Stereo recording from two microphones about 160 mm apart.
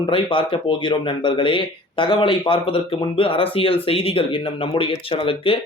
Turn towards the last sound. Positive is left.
turn(degrees=35)  # may be behind; listen again after turning